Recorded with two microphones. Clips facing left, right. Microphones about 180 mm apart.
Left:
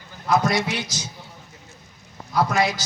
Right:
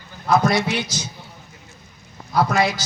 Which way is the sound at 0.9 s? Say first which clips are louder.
Right 3 dB; 60° right (ahead or behind).